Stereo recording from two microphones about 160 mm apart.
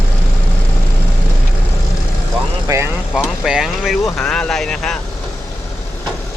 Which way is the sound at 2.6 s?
15° right (ahead or behind).